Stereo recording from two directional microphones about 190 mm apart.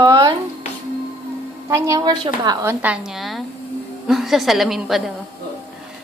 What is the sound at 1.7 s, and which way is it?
A woman's voice, 15° right (ahead or behind).